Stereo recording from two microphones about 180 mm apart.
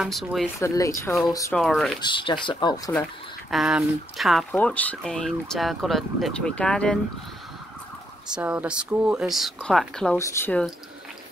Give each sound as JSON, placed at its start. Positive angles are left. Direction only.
{"t": 0.0, "sound": "speech", "side_deg": 0}
{"t": 0.6, "sound": "speech", "side_deg": 15}
{"t": 1.5, "sound": "speech", "side_deg": 5}
{"t": 2.0, "sound": "speech", "side_deg": 25}
{"t": 3.4, "sound": "speech", "side_deg": 0}
{"t": 8.3, "sound": "speech", "side_deg": -5}
{"t": 10.1, "sound": "speech", "side_deg": 15}